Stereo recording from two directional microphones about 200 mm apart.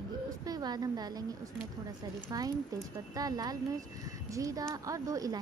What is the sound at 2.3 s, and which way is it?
A woman's voice, 20° right (ahead or behind).